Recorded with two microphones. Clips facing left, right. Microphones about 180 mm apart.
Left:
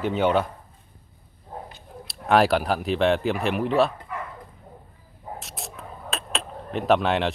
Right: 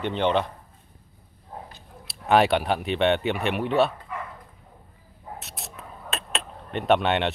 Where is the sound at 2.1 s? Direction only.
Centre (ahead or behind).